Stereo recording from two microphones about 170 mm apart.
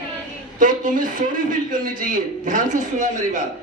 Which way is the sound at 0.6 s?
50° right (ahead or behind).